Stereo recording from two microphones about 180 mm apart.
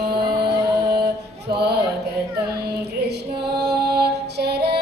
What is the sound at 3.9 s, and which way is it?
Female singing, 65° right (ahead or behind).